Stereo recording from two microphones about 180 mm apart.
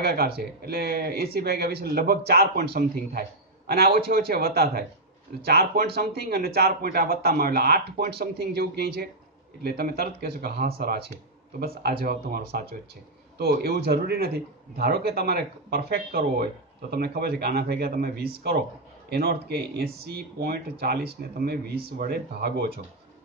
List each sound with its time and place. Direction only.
0.0 s a man's voice: 60° right (ahead or behind)